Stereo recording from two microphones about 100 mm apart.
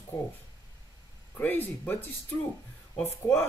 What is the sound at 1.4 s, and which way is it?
Speech, 20° left (ahead or behind).